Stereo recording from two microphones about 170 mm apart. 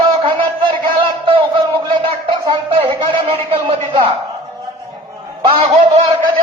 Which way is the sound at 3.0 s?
30° right (ahead or behind).